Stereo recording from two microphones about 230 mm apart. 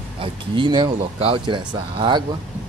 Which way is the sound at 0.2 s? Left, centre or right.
Right.